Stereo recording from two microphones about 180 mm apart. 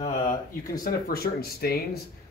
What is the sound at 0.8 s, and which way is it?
Speech, 55° left (ahead or behind).